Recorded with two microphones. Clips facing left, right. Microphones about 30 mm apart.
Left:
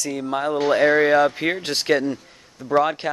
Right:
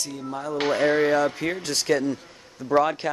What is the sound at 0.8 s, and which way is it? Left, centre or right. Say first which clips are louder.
Speech: left 4 dB; left.